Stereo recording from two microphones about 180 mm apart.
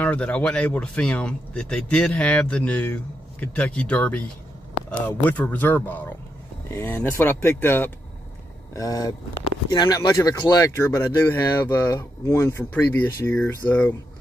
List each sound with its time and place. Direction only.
0.0 s speech: 5° left (ahead or behind)